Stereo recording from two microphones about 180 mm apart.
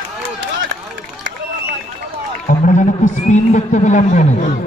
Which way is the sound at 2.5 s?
45° left (ahead or behind).